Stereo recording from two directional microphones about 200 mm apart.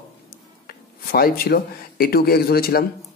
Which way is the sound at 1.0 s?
50° left (ahead or behind).